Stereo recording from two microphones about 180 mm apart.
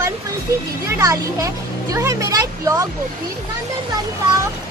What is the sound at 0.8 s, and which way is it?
Speech, 15° right (ahead or behind).